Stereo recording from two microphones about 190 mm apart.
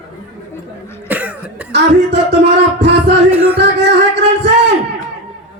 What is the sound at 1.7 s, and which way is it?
Music, 65° right (ahead or behind).